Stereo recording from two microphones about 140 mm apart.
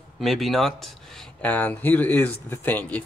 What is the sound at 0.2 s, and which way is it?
Speech, centre (ahead or behind).